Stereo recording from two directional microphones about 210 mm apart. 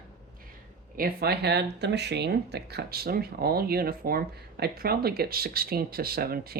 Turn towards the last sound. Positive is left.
turn(degrees=-45)  # may be behind; listen again after turning